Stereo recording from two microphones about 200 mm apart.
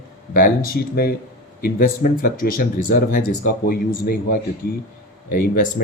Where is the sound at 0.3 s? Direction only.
45° left (ahead or behind).